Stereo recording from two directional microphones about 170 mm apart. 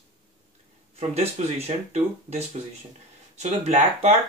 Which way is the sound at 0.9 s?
40° right (ahead or behind).